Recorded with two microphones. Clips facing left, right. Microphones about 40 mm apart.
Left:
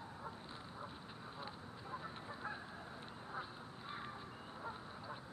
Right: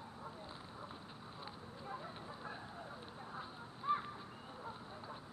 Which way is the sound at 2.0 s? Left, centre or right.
Centre.